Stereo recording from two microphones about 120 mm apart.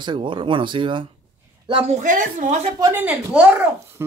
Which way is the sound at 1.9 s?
90° right.